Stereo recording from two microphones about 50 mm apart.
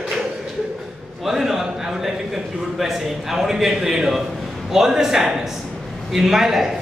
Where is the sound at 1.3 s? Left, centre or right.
Centre.